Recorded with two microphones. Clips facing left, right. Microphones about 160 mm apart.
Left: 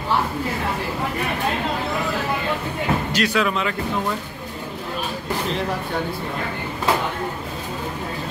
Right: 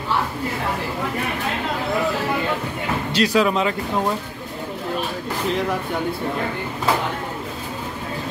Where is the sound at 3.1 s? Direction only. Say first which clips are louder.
Right 3 dB; 35° right (ahead or behind).